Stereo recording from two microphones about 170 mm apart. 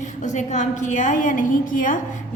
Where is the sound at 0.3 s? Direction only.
45° left (ahead or behind).